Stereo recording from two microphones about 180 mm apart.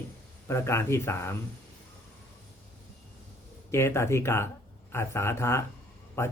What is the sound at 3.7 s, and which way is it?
Speech, 15° left (ahead or behind).